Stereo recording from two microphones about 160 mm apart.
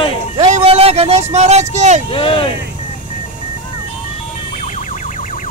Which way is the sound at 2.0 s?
35° left (ahead or behind).